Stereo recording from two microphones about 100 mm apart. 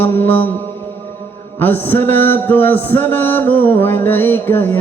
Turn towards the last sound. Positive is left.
turn(degrees=20)  # may be behind; listen again after turning